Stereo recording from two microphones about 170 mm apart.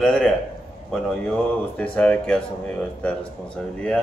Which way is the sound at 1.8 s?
5° left (ahead or behind).